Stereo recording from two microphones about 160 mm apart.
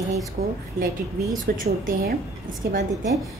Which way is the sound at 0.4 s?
70° right (ahead or behind).